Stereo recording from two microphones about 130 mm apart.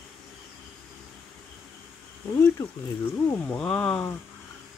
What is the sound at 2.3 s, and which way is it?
Speech, 25° left (ahead or behind).